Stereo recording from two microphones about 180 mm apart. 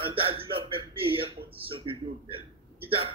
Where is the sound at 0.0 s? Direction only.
30° right (ahead or behind).